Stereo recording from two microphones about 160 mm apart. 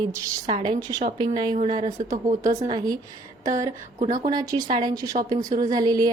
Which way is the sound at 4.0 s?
45° right (ahead or behind).